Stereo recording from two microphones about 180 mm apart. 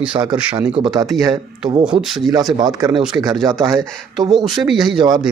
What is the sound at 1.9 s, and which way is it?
Speech, 5° right (ahead or behind).